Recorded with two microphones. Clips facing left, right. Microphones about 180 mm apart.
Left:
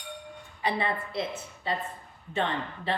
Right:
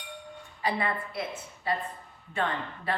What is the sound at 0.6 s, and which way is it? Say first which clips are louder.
A woman's voice: left 1 dB; 25° left (ahead or behind).